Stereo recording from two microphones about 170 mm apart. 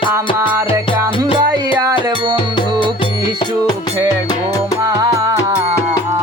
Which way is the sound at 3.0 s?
30° left (ahead or behind).